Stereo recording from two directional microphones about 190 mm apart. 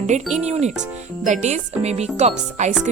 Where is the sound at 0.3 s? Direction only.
35° right (ahead or behind).